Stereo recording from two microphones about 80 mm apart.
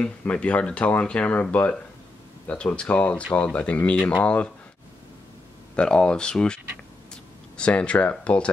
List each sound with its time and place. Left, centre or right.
0.0 s speech: centre
5.8 s speech: centre